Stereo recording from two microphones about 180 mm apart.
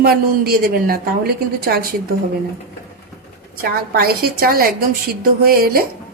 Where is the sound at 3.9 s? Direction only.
55° right (ahead or behind).